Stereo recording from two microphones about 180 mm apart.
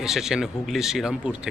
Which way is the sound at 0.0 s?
5° right (ahead or behind).